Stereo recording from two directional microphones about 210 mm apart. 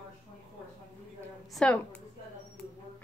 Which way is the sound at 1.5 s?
5° left (ahead or behind).